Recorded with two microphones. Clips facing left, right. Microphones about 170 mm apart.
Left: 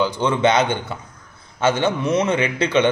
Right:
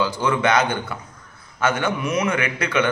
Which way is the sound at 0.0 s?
20° left (ahead or behind).